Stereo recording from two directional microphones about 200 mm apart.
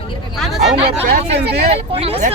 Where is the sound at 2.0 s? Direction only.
30° right (ahead or behind).